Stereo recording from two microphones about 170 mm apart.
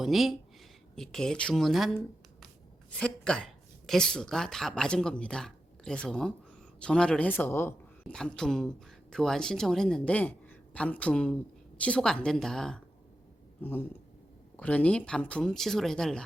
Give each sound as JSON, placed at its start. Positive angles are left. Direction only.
{"t": 0.0, "sound": "speech", "side_deg": 0}
{"t": 3.0, "sound": "speech", "side_deg": 5}